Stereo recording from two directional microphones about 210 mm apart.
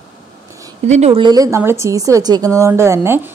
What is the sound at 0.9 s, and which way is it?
Speech, 30° right (ahead or behind).